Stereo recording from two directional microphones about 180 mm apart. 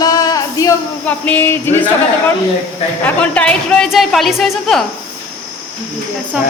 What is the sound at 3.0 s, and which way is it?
A woman's voice, 5° left (ahead or behind).